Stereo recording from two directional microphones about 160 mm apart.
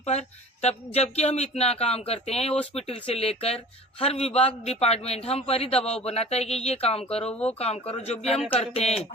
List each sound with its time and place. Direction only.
0.0 s a woman's voice: 45° left (ahead or behind)